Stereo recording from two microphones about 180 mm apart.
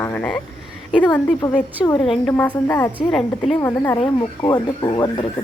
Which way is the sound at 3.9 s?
25° left (ahead or behind).